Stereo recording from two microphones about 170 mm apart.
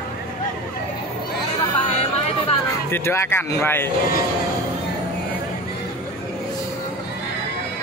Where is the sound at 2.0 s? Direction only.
35° left (ahead or behind).